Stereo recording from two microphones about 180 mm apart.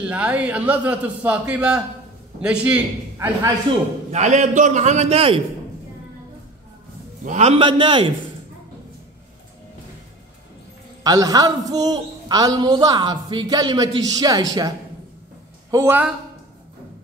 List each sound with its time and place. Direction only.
0.1 s a man's voice: 10° right (ahead or behind)
4.1 s a man's voice: 40° right (ahead or behind)
7.2 s a man's voice: 40° right (ahead or behind)
11.1 s a man's voice: 20° right (ahead or behind)
15.7 s speech: 15° right (ahead or behind)